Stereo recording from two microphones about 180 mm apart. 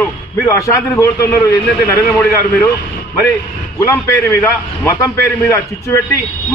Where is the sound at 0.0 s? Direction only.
15° left (ahead or behind).